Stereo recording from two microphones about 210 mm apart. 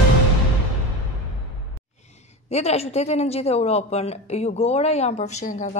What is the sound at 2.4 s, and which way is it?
A woman's voice, 30° left (ahead or behind).